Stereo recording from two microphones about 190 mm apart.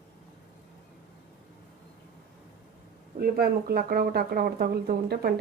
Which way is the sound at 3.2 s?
55° right (ahead or behind).